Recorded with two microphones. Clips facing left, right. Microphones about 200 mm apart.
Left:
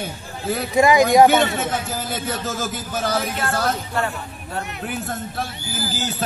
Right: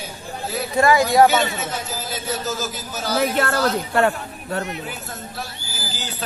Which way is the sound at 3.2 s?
65° right (ahead or behind).